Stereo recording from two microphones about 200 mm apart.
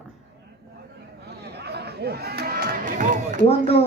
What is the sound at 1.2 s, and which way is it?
Music, 55° right (ahead or behind).